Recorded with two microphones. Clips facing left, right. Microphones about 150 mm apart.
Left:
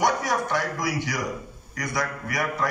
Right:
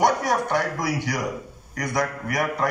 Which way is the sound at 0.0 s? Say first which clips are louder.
Right 3 dB; 55° right (ahead or behind).